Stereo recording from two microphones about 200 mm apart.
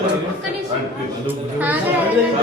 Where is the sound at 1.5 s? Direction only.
10° right (ahead or behind).